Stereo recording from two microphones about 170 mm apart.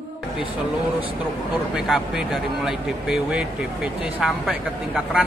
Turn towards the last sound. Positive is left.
turn(degrees=-5)  # may be behind; listen again after turning